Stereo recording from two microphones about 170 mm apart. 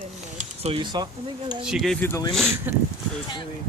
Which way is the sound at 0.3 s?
35° right (ahead or behind).